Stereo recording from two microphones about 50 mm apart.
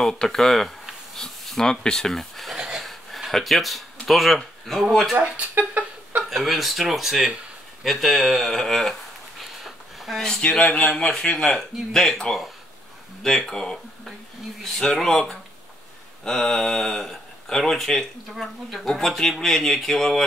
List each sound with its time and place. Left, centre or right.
0.0 s speech: centre
2.5 s a sound: centre
2.8 s a sound: centre
4.1 s speech: centre
5.6 s fowl: right
6.3 s speech: centre
9.9 s a sound: centre
10.7 s speech: left
11.3 s speech: centre
16.3 s speech: centre